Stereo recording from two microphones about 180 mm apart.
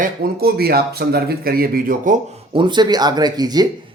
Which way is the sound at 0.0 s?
60° right (ahead or behind).